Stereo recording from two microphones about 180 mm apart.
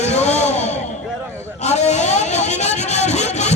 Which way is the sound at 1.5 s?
40° left (ahead or behind).